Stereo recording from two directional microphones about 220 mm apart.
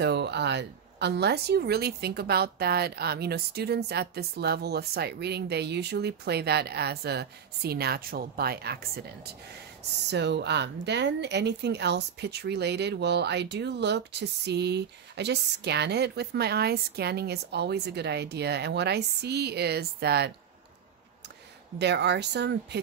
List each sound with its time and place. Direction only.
0.0 s speech: 50° right (ahead or behind)
21.7 s speech: 50° right (ahead or behind)